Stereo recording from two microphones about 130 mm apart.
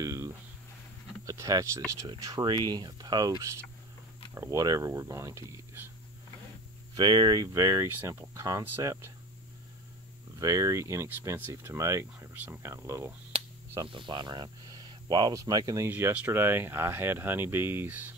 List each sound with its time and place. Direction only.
0.0 s a sound: 25° right (ahead or behind)
1.2 s speech: 25° right (ahead or behind)
7.0 s speech: 35° right (ahead or behind)
10.4 s speech: 25° right (ahead or behind)
13.8 s speech: 40° right (ahead or behind)
15.9 s speech: 15° right (ahead or behind)